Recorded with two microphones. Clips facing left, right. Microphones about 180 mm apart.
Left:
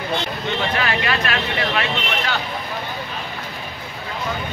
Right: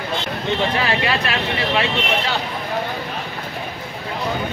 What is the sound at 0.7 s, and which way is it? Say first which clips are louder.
Speech: right 2 dB; 25° right (ahead or behind).